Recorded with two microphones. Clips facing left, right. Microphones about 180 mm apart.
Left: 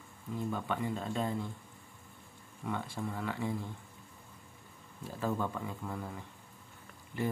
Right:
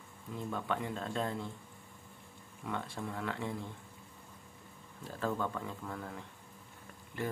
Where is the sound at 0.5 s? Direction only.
5° left (ahead or behind).